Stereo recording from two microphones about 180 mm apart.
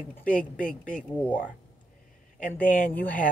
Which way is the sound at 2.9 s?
10° left (ahead or behind).